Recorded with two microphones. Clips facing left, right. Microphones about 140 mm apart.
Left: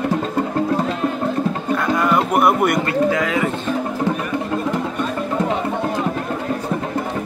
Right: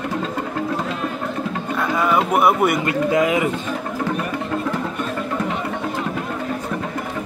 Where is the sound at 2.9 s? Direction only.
20° right (ahead or behind).